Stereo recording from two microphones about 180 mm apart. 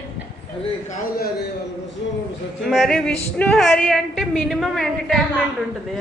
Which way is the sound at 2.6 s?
Centre (ahead or behind).